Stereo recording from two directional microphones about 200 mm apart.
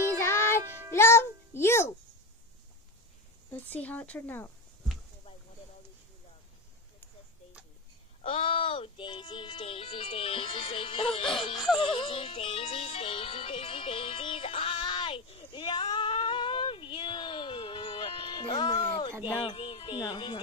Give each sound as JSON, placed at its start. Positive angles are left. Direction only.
{"t": 0.2, "sound": "music", "side_deg": 10}
{"t": 3.7, "sound": "speech", "side_deg": 10}
{"t": 8.2, "sound": "music", "side_deg": 30}
{"t": 11.5, "sound": "speech", "side_deg": 0}
{"t": 12.0, "sound": "music", "side_deg": 30}